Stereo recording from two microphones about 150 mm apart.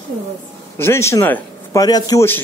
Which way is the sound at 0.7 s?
15° left (ahead or behind).